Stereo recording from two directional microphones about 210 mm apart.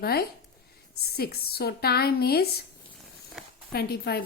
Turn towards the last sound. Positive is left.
turn(degrees=50)  # may be behind; listen again after turning